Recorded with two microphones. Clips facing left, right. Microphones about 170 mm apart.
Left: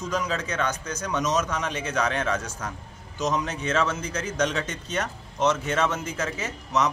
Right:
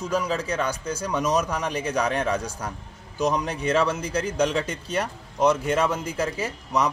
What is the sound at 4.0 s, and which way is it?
Speech, 35° right (ahead or behind).